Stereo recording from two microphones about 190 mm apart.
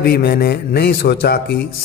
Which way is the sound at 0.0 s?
55° left (ahead or behind).